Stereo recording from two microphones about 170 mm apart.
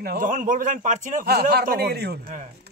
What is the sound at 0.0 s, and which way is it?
A man's voice, 55° right (ahead or behind).